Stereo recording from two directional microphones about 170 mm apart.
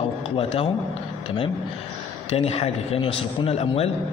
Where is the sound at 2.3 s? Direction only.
35° left (ahead or behind).